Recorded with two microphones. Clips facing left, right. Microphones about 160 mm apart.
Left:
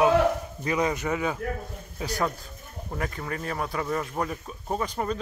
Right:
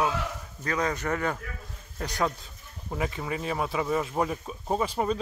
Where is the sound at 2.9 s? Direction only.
10° right (ahead or behind).